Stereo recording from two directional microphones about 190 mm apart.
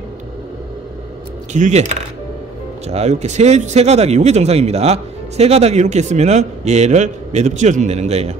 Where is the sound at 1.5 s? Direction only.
35° right (ahead or behind).